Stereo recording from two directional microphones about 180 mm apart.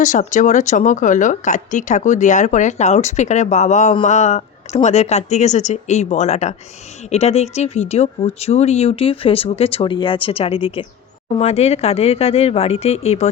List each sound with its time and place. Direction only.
0.0 s a woman's voice: 45° left (ahead or behind)